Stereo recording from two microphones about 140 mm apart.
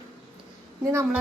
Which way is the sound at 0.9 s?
15° right (ahead or behind).